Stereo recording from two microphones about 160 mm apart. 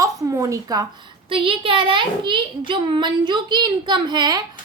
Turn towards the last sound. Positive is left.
turn(degrees=-25)  # may be behind; listen again after turning